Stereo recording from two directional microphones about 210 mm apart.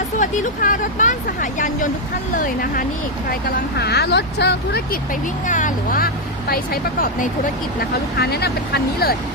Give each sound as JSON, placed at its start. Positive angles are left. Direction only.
{"t": 0.2, "sound": "speech", "side_deg": 40}
{"t": 5.5, "sound": "speech", "side_deg": 40}
{"t": 7.8, "sound": "speech", "side_deg": 50}